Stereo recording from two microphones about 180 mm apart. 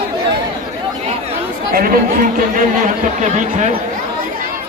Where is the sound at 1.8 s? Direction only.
55° right (ahead or behind).